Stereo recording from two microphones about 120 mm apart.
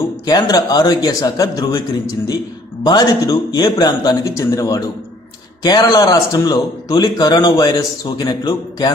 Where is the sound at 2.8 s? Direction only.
35° left (ahead or behind).